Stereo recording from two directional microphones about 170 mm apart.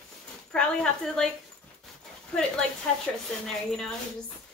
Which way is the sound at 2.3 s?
5° left (ahead or behind).